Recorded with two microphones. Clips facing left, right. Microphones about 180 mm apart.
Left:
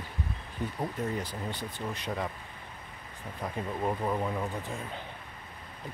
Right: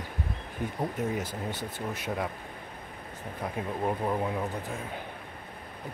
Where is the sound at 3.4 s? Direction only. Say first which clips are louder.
Right 1 dB; 10° right (ahead or behind).